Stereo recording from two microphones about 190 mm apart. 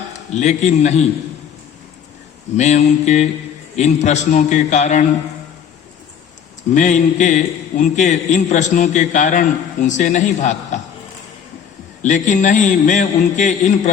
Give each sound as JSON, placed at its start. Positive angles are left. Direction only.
{"t": 0.3, "sound": "a man's voice", "side_deg": 35}
{"t": 2.6, "sound": "a man's voice", "side_deg": 35}
{"t": 6.7, "sound": "a man's voice", "side_deg": 40}
{"t": 12.0, "sound": "a man's voice", "side_deg": 40}